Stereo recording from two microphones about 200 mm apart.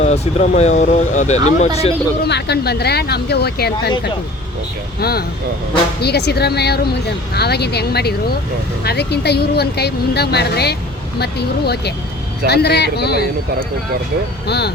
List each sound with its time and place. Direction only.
0.0 s speech: 35° left (ahead or behind)
2.2 s a woman's voice: 55° left (ahead or behind)
4.9 s a woman's voice: 50° left (ahead or behind)
14.4 s speech: 55° left (ahead or behind)